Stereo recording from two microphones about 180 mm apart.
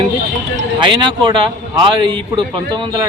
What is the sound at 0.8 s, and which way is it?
A man's voice, 25° right (ahead or behind).